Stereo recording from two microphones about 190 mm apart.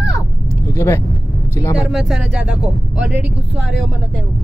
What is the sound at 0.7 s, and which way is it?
Vehicle, 15° left (ahead or behind).